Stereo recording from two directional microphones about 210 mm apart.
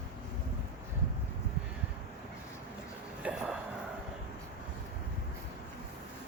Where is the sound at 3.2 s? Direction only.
5° right (ahead or behind).